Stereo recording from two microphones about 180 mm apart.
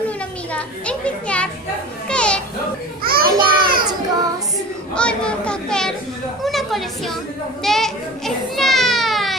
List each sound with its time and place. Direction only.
0.5 s children playing: 5° left (ahead or behind)
3.0 s children playing: 55° right (ahead or behind)
4.9 s a child's voice: 5° left (ahead or behind)
7.6 s children playing: centre (ahead or behind)